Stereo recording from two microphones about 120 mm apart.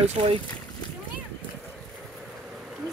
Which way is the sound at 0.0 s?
60° right (ahead or behind).